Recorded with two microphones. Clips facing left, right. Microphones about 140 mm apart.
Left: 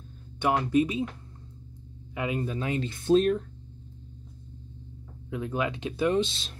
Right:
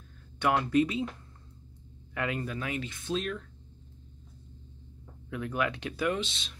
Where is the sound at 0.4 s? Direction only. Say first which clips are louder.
Left 2 dB; 20° left (ahead or behind).